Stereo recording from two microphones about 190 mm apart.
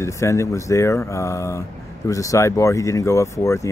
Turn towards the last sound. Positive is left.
turn(degrees=15)  # may be behind; listen again after turning